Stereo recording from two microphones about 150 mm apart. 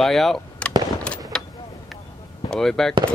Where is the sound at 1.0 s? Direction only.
5° left (ahead or behind).